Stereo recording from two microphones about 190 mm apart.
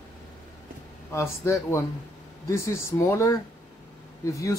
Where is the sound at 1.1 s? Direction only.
15° left (ahead or behind).